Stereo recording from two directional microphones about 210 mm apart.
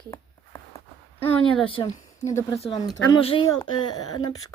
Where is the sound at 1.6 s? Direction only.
25° left (ahead or behind).